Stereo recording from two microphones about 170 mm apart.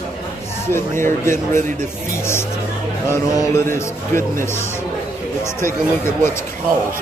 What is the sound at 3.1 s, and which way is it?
Speech, 15° left (ahead or behind).